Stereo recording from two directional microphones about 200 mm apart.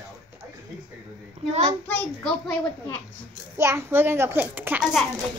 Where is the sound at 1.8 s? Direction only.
5° left (ahead or behind).